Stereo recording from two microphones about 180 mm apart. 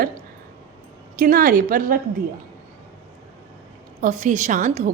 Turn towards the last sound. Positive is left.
turn(degrees=-45)  # may be behind; listen again after turning